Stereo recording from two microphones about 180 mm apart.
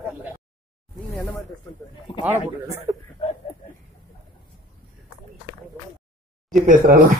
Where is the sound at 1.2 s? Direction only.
10° left (ahead or behind).